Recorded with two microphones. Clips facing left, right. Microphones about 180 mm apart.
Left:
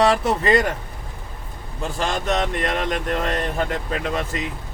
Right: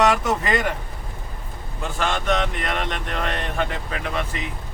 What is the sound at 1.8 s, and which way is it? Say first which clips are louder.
Speech: left 1 dB; 35° left (ahead or behind).